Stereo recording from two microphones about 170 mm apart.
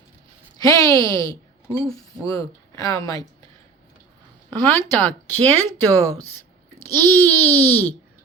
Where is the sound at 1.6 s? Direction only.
35° right (ahead or behind).